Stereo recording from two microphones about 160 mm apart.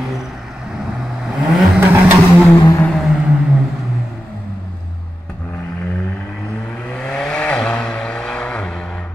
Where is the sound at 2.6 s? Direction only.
25° left (ahead or behind).